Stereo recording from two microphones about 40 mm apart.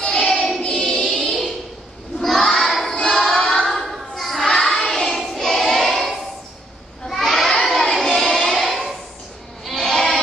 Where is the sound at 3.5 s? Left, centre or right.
Centre.